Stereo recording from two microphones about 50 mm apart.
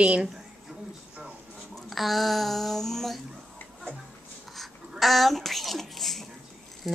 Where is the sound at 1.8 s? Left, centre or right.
Centre.